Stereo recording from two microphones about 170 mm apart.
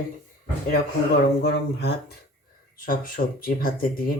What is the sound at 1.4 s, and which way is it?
Speech, 75° left (ahead or behind).